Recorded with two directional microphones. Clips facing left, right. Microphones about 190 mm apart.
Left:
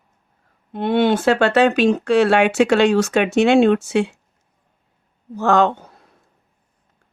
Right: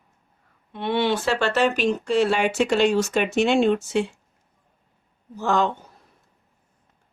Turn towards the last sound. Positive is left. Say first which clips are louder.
# left 6 dB
turn(degrees=70)  # may be behind; listen again after turning